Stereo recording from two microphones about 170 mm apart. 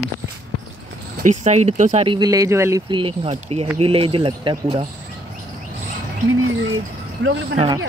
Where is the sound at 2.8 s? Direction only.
30° right (ahead or behind).